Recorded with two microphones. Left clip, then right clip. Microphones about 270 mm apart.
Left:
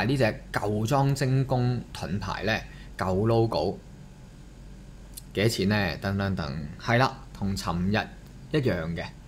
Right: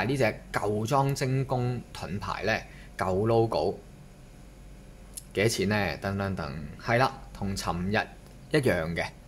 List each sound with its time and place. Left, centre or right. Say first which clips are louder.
0.0 s speech: left 1 dB; centre
5.3 s speech: even; centre